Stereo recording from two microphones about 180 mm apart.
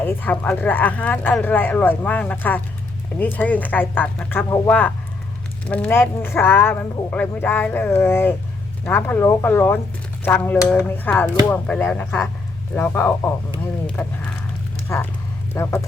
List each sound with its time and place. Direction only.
0.0 s speech: 10° left (ahead or behind)